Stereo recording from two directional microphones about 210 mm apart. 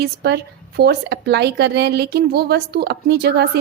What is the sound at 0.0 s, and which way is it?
Speech, 50° right (ahead or behind).